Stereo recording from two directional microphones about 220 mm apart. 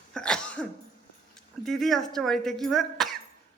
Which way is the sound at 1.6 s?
Centre (ahead or behind).